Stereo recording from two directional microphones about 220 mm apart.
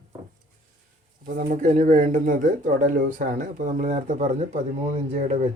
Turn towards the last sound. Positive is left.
turn(degrees=-30)  # may be behind; listen again after turning